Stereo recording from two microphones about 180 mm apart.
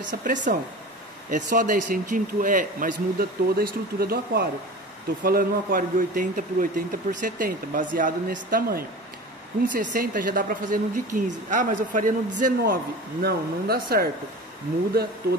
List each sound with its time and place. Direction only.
0.0 s speech: 45° right (ahead or behind)
13.2 s speech: 55° right (ahead or behind)